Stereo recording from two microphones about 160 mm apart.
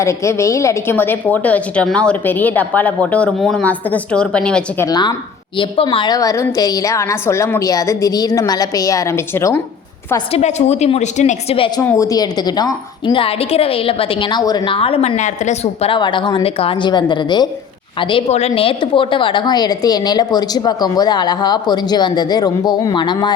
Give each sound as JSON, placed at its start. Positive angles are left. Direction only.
{"t": 0.0, "sound": "a woman's voice", "side_deg": 20}
{"t": 4.9, "sound": "a woman's voice", "side_deg": 25}
{"t": 10.3, "sound": "a woman's voice", "side_deg": 45}
{"t": 11.8, "sound": "a woman's voice", "side_deg": 20}
{"t": 13.2, "sound": "a woman's voice", "side_deg": 40}